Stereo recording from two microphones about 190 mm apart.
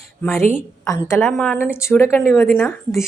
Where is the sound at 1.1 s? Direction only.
5° left (ahead or behind).